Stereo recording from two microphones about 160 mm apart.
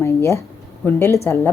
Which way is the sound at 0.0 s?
15° left (ahead or behind).